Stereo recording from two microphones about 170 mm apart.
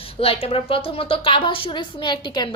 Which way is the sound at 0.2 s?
35° left (ahead or behind).